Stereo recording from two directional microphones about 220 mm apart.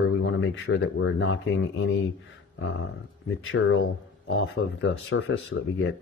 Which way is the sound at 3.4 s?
60° left (ahead or behind).